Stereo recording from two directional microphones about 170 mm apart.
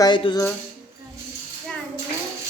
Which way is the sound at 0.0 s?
25° left (ahead or behind).